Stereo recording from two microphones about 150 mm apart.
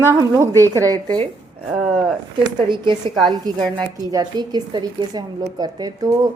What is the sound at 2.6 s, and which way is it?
Speech, 30° right (ahead or behind).